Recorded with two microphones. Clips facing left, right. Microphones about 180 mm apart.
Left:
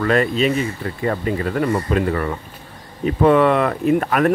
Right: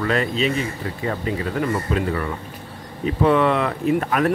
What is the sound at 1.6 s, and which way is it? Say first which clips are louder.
Speech: left 3 dB; 50° left (ahead or behind).